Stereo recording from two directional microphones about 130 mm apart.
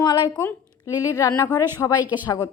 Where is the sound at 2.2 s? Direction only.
25° left (ahead or behind).